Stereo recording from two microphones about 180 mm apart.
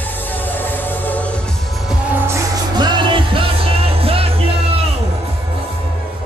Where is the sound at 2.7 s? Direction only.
25° right (ahead or behind).